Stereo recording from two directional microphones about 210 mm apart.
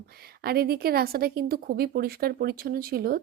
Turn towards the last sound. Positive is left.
turn(degrees=-45)  # may be behind; listen again after turning